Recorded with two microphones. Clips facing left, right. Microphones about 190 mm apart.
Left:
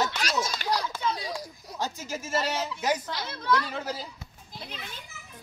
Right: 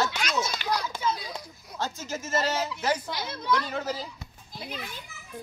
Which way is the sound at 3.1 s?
15° right (ahead or behind).